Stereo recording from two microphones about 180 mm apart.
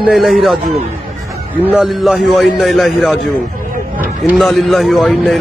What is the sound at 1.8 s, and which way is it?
Speech, 5° right (ahead or behind).